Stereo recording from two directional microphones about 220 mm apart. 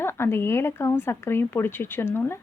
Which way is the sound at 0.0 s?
10° left (ahead or behind).